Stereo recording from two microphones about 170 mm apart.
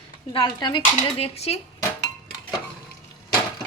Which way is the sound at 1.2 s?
35° left (ahead or behind).